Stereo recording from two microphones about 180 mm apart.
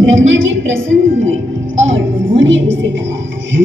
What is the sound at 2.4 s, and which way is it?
Speech, 85° right.